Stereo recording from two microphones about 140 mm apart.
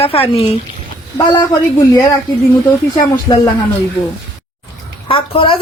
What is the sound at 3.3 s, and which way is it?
Speech, 30° left (ahead or behind).